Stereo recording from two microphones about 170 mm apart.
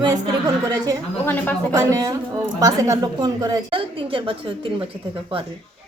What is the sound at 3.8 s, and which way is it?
A woman's voice, 30° right (ahead or behind).